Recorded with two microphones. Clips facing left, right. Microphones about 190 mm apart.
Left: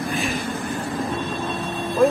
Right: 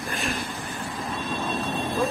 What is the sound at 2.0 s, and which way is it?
Speech, 60° left (ahead or behind).